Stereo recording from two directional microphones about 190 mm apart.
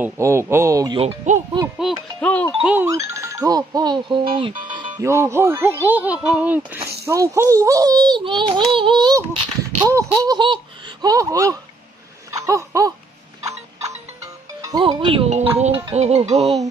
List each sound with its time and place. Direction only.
0.0 s speech: 15° right (ahead or behind)
0.9 s speech: 35° right (ahead or behind)
1.9 s speech: centre (ahead or behind)
2.6 s a child's voice: 10° right (ahead or behind); by 4.6 s 25° right (ahead or behind)
5.0 s a child's voice: 15° right (ahead or behind)
12.3 s laughter: 15° right (ahead or behind)
13.4 s music: 15° right (ahead or behind)